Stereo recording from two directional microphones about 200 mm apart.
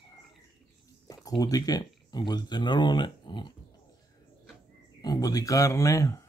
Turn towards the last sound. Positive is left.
turn(degrees=15)  # may be behind; listen again after turning